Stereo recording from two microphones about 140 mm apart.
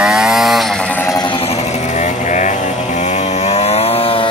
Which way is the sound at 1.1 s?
35° left (ahead or behind).